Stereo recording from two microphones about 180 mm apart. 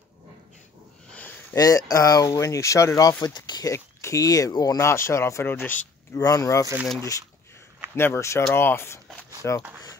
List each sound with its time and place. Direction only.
1.1 s a sound: 10° left (ahead or behind)
1.6 s speech: 20° left (ahead or behind)
7.9 s speech: 15° left (ahead or behind)